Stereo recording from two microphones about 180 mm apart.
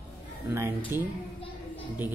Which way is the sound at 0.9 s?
15° right (ahead or behind).